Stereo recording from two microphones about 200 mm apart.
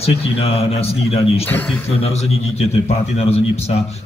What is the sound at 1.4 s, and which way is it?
Speech, 5° left (ahead or behind).